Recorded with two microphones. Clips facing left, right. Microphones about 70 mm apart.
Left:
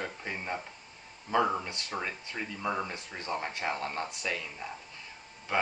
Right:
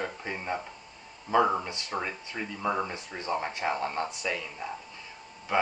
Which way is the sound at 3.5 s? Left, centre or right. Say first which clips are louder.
Right 4 dB; centre.